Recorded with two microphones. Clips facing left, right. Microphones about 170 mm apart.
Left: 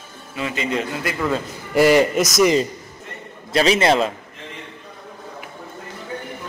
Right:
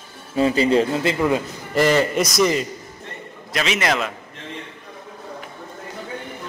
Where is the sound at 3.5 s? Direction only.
30° left (ahead or behind).